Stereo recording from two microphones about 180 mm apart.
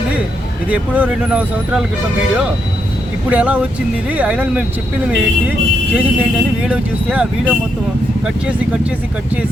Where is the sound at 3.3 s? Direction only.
10° right (ahead or behind).